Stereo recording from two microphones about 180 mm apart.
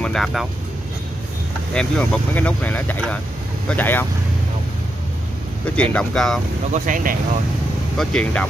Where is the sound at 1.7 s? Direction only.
5° left (ahead or behind).